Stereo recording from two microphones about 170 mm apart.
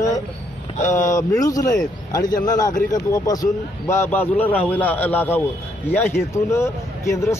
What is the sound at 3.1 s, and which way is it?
A man's voice, 20° left (ahead or behind).